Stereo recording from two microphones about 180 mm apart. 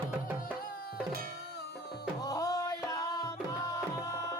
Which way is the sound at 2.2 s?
20° left (ahead or behind).